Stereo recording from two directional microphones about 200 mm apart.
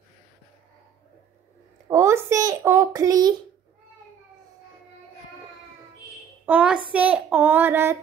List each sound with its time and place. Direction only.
1.9 s a child's voice: 15° right (ahead or behind)
6.4 s a woman's voice: 5° right (ahead or behind)
6.9 s child singing: 5° right (ahead or behind)